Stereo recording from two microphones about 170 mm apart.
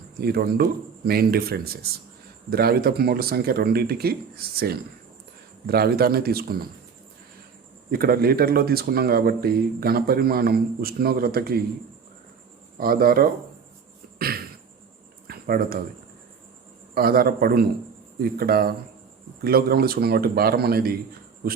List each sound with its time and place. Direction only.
0.2 s speech: 65° right (ahead or behind)
7.9 s speech: 65° right (ahead or behind)
12.7 s speech: 60° right (ahead or behind)
15.3 s a sound: 60° right (ahead or behind)
16.9 s speech: 60° right (ahead or behind)